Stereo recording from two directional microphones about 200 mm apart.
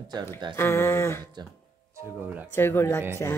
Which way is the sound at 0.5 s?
10° left (ahead or behind).